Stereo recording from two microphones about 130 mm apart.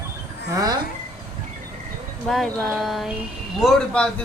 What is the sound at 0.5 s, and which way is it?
Speech, 30° right (ahead or behind).